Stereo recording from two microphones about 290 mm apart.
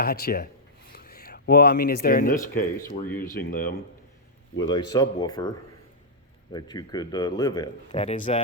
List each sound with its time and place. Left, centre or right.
0.0 s speech: left
4.7 s speech: centre